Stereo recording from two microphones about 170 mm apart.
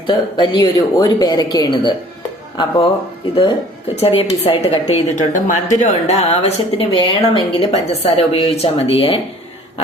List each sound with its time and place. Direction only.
0.1 s speech: 30° left (ahead or behind)
3.9 s a woman's voice: 35° left (ahead or behind)